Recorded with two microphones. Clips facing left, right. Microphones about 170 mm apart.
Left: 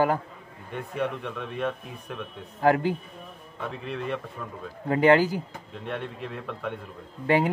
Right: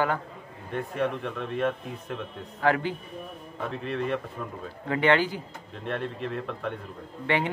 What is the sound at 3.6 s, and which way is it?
Speech, centre (ahead or behind).